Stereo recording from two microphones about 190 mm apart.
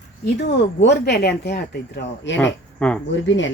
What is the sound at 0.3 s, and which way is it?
Speech, 65° left (ahead or behind).